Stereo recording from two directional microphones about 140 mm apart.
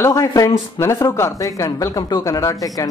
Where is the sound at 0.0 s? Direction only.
20° left (ahead or behind).